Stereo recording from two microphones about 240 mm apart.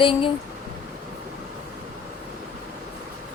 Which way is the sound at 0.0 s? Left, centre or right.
Left.